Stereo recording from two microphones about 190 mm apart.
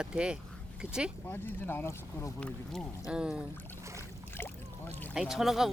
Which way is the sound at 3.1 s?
5° right (ahead or behind).